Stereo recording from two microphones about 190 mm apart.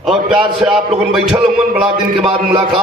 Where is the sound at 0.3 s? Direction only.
5° right (ahead or behind).